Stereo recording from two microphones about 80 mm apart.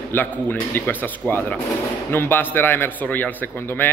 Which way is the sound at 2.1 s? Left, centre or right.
Left.